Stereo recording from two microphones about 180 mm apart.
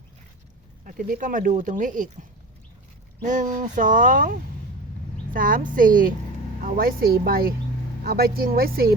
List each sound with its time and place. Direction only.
0.9 s speech: 50° right (ahead or behind)
3.2 s speech: 45° right (ahead or behind)